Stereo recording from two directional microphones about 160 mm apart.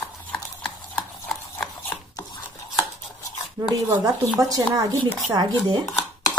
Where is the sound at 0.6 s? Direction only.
5° left (ahead or behind).